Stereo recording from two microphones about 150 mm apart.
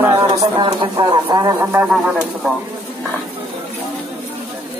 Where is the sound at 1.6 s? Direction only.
15° right (ahead or behind).